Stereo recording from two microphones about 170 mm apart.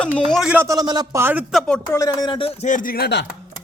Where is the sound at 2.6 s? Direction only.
50° left (ahead or behind); by 3.3 s 80° left.